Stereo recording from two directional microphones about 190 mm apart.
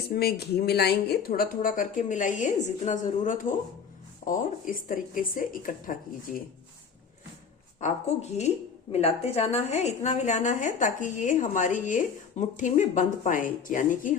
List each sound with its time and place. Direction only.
0.1 s speech: 55° left (ahead or behind)
8.9 s a woman's voice: 35° left (ahead or behind)